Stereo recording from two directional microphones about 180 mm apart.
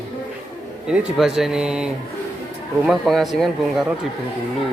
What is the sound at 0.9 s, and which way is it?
Speech, 5° right (ahead or behind).